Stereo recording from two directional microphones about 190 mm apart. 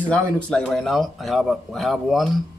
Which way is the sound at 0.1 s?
5° left (ahead or behind).